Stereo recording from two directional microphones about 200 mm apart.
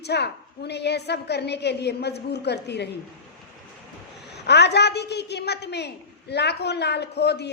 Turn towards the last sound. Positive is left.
turn(degrees=55)  # may be behind; listen again after turning